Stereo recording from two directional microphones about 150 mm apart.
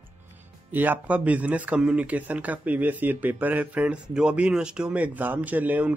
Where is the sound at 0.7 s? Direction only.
10° right (ahead or behind).